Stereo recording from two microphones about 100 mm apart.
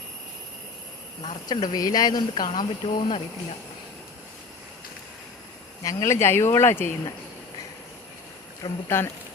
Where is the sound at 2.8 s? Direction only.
75° left (ahead or behind).